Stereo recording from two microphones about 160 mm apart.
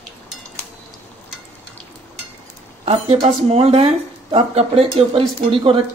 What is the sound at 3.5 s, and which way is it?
Speech, 40° right (ahead or behind).